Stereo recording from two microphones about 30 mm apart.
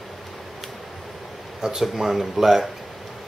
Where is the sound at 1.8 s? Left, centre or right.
Centre.